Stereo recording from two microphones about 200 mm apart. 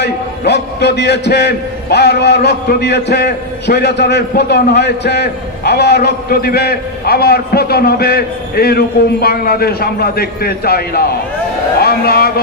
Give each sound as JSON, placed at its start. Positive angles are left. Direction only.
{"t": 0.0, "sound": "a man's voice", "side_deg": 55}